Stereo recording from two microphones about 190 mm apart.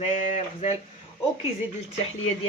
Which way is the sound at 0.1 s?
40° left (ahead or behind).